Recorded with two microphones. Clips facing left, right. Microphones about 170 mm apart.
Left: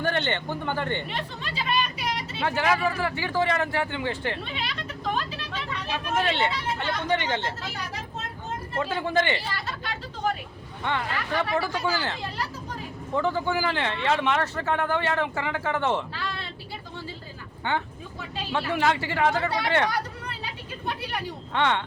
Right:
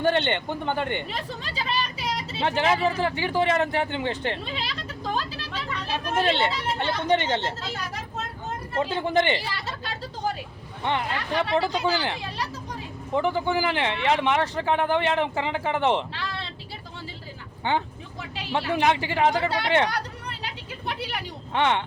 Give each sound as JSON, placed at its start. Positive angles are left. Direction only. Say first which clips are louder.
{"t": 0.0, "sound": "speech", "louder": "right 4 dB", "side_deg": -20}
{"t": 1.1, "sound": "speech", "louder": "even", "side_deg": -40}
{"t": 2.4, "sound": "speech", "louder": "right 2 dB", "side_deg": -25}
{"t": 4.5, "sound": "vehicle", "louder": "even", "side_deg": -35}
{"t": 5.9, "sound": "speech", "louder": "right 2 dB", "side_deg": -35}
{"t": 8.8, "sound": "speech", "louder": "right 2 dB", "side_deg": -20}
{"t": 10.8, "sound": "speech", "louder": "right 2 dB", "side_deg": -20}
{"t": 18.5, "sound": "speech", "louder": "right 2 dB", "side_deg": -20}
{"t": 21.5, "sound": "speech", "louder": "right 2 dB", "side_deg": -20}